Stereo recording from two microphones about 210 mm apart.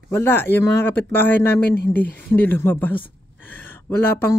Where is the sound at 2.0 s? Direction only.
10° left (ahead or behind).